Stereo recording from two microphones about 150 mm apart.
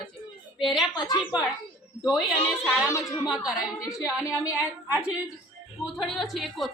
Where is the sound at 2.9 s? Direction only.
20° left (ahead or behind).